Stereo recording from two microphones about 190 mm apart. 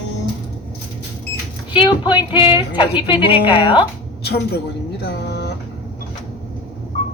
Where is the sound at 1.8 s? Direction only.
25° left (ahead or behind).